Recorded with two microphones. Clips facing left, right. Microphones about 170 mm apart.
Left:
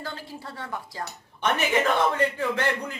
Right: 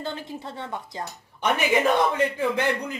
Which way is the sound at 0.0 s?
20° right (ahead or behind).